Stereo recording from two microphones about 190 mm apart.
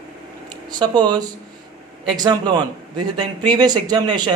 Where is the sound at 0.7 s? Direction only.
20° right (ahead or behind).